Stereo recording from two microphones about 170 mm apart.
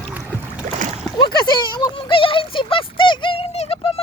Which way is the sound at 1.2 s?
25° left (ahead or behind).